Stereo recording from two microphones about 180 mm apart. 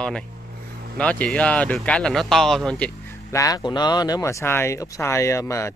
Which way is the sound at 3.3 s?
20° left (ahead or behind).